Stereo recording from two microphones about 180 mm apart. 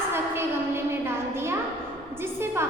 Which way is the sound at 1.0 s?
15° right (ahead or behind).